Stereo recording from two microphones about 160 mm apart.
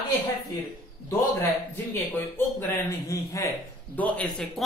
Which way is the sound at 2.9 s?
20° left (ahead or behind).